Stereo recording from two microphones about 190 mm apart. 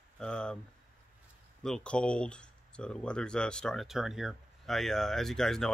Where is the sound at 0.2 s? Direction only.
5° left (ahead or behind).